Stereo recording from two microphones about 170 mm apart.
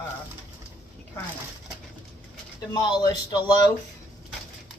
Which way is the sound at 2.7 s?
25° left (ahead or behind).